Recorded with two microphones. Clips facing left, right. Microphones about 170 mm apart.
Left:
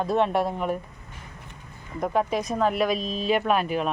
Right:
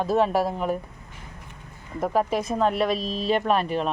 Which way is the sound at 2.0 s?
5° right (ahead or behind).